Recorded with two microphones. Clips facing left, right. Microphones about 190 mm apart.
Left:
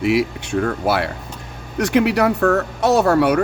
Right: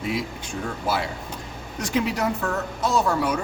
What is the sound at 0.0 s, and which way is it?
Speech, 75° left (ahead or behind).